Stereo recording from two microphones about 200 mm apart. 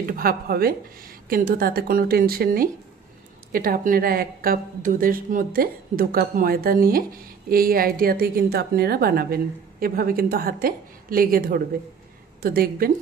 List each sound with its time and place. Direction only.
0.0 s a woman's voice: 45° right (ahead or behind)